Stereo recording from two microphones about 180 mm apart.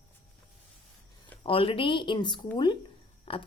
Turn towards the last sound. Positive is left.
turn(degrees=30)  # may be behind; listen again after turning